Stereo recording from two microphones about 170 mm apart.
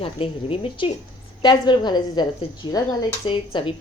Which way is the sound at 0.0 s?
35° left (ahead or behind).